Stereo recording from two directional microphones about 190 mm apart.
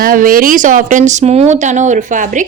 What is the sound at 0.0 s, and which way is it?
A woman's voice, 50° right (ahead or behind).